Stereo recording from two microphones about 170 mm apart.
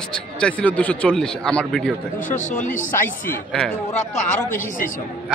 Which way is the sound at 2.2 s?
45° left (ahead or behind).